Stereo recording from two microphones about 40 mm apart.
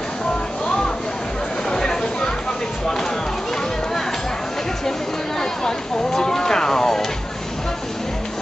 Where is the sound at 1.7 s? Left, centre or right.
Centre.